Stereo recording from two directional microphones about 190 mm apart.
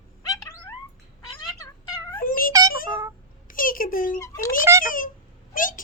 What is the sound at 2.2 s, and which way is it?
Cat, 45° left (ahead or behind).